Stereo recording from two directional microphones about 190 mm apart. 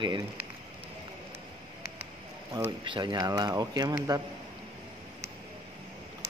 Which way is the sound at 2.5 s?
25° right (ahead or behind).